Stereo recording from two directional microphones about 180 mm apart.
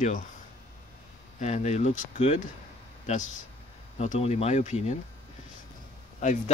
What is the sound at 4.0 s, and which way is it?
Speech, 35° left (ahead or behind).